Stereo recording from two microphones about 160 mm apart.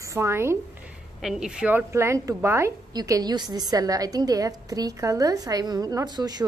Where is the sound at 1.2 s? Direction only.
5° right (ahead or behind).